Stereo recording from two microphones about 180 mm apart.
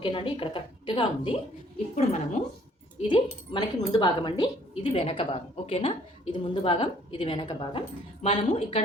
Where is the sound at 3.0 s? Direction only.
30° left (ahead or behind).